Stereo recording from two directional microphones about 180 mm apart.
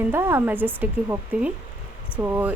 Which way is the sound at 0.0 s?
10° right (ahead or behind).